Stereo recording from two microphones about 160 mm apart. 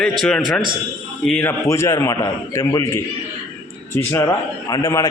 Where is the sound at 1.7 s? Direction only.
20° left (ahead or behind).